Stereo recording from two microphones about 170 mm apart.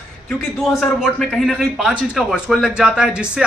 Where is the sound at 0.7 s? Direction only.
Centre (ahead or behind).